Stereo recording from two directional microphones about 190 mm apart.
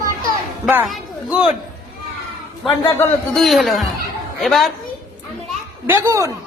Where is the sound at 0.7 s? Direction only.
5° right (ahead or behind).